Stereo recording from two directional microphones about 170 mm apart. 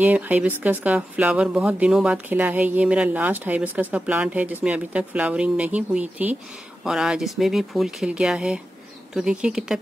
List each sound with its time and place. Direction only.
0.0 s speech: 10° right (ahead or behind)